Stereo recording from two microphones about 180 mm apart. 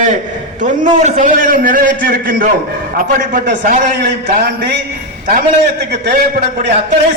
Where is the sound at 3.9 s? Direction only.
70° right (ahead or behind).